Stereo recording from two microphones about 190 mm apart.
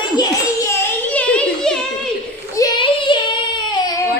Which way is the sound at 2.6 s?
25° left (ahead or behind).